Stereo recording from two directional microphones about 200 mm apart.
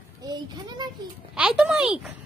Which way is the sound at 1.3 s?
5° right (ahead or behind).